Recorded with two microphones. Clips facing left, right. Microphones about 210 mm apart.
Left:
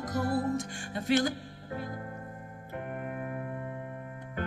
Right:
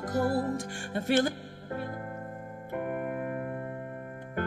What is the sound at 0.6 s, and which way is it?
Speech, 55° right (ahead or behind).